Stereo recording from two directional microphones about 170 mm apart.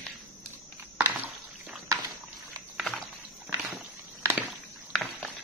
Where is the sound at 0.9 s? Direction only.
10° right (ahead or behind).